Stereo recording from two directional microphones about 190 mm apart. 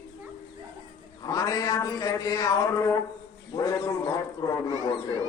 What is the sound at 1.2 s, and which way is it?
A man's voice, 20° left (ahead or behind).